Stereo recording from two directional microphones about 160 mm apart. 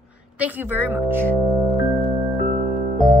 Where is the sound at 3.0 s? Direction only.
Centre (ahead or behind).